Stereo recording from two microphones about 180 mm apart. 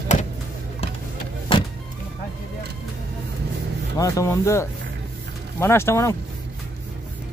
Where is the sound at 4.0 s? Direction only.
15° left (ahead or behind).